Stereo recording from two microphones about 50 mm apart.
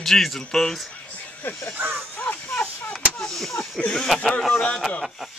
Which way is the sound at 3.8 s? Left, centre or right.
Centre.